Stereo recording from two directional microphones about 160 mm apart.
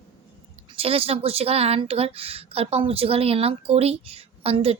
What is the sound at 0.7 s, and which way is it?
Speech, 35° right (ahead or behind).